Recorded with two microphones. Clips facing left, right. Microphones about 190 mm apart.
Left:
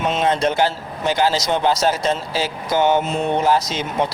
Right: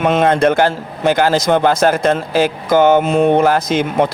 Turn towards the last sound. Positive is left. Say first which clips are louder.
# right 7 dB
turn(degrees=-55)  # may be behind; listen again after turning